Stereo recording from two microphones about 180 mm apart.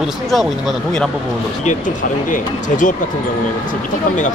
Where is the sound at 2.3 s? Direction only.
45° left (ahead or behind).